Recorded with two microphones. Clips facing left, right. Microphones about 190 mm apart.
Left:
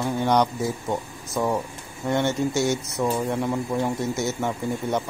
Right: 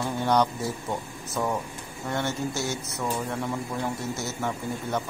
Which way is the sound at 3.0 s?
15° left (ahead or behind).